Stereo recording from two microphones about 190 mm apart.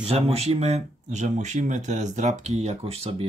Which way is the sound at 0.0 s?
35° right (ahead or behind).